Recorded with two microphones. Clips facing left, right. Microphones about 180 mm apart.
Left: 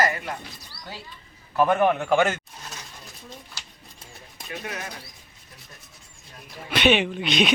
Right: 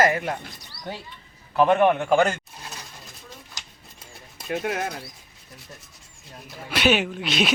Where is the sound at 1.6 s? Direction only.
Centre (ahead or behind).